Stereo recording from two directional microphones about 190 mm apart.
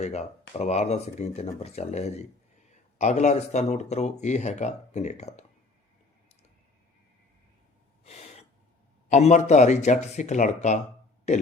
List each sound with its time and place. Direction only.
0.0 s speech: 35° left (ahead or behind)
8.0 s gasp: 35° left (ahead or behind)
9.0 s speech: 35° left (ahead or behind)